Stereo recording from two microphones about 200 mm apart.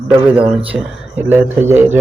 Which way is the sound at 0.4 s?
25° right (ahead or behind).